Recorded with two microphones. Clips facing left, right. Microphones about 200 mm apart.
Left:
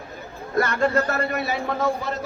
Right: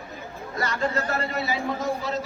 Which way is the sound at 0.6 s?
55° left (ahead or behind).